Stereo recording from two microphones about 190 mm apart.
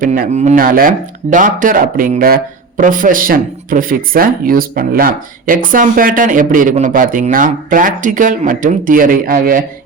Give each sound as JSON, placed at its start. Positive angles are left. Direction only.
{"t": 0.0, "sound": "speech", "side_deg": -45}